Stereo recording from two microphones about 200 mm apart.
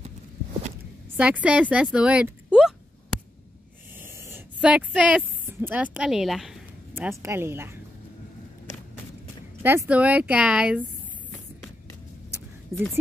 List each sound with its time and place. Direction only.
1.1 s speech: 5° right (ahead or behind)
4.0 s a sound: 10° right (ahead or behind)
7.2 s speech: 15° right (ahead or behind)
9.6 s speech: 10° right (ahead or behind)